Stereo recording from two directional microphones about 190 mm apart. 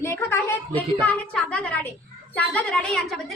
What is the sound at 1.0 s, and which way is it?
A woman's voice, 5° left (ahead or behind).